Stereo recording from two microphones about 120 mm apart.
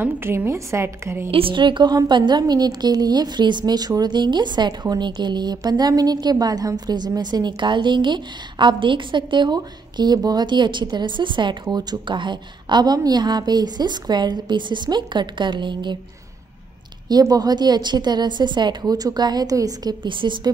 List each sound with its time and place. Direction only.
0.0 s a woman's voice: 15° right (ahead or behind)
1.3 s a woman's voice: 45° right (ahead or behind)
17.1 s a woman's voice: 35° right (ahead or behind)